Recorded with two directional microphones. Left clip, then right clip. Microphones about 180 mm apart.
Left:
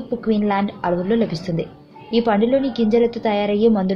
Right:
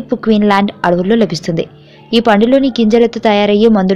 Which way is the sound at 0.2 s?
40° right (ahead or behind).